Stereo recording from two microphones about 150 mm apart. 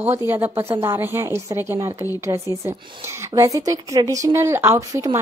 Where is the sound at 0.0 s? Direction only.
15° right (ahead or behind).